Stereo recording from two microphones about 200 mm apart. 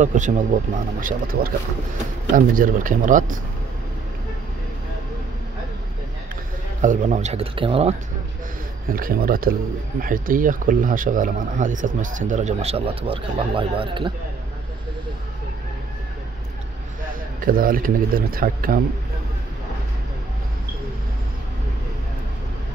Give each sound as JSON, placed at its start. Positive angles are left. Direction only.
{"t": 0.0, "sound": "a man's voice", "side_deg": -40}
{"t": 6.8, "sound": "speech", "side_deg": -40}
{"t": 8.9, "sound": "speech", "side_deg": -45}
{"t": 17.5, "sound": "a man's voice", "side_deg": -45}